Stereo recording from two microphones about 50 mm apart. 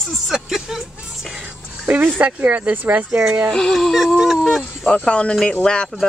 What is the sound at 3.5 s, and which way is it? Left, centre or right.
Speech, centre.